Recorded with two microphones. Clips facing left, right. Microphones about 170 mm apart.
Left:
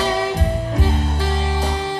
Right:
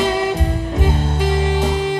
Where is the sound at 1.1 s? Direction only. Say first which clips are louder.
Right 5 dB; 15° right (ahead or behind).